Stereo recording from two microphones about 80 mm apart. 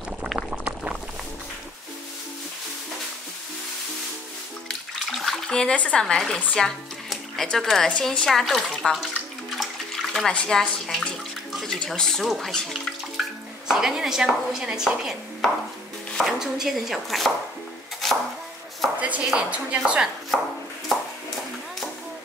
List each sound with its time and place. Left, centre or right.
0.4 s boiling: centre
4.6 s bathtub: centre
6.4 s speech: centre
10.1 s speech: centre
16.1 s chopping: centre
16.3 s speech: centre
18.0 s chopping: centre
18.9 s speech: centre